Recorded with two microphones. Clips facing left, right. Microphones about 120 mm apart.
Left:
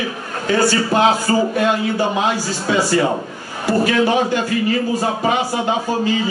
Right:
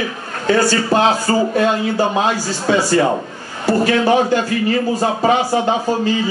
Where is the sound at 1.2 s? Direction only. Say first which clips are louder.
Right 1 dB; 35° right (ahead or behind).